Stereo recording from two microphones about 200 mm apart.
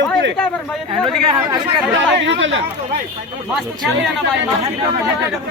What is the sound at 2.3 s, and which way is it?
Speech, 70° right (ahead or behind).